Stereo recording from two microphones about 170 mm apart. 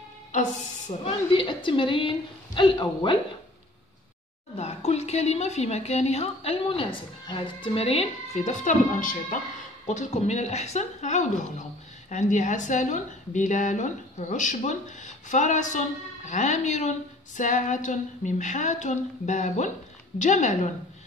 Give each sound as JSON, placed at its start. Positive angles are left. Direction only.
{"t": 0.3, "sound": "a woman's voice", "side_deg": 45}
{"t": 1.3, "sound": "a woman's voice", "side_deg": 30}
{"t": 4.6, "sound": "a woman's voice", "side_deg": 40}